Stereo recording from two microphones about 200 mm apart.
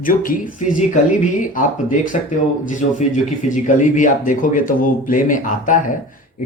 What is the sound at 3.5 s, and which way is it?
Speech, 40° left (ahead or behind).